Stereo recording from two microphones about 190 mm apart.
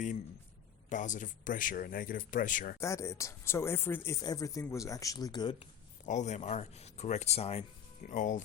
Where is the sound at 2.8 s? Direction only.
15° left (ahead or behind).